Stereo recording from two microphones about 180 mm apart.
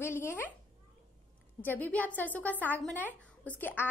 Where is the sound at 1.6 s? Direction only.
10° left (ahead or behind).